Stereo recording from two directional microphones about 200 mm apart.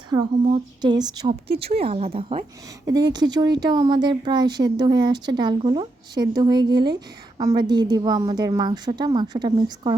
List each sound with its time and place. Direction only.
0.4 s speech: 25° right (ahead or behind)